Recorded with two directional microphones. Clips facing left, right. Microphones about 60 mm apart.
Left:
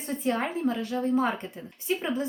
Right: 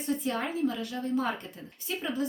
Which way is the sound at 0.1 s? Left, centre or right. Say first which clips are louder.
Left 3 dB; left.